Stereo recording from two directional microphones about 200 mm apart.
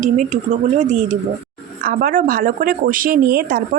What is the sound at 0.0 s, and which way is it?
Speech, 40° right (ahead or behind).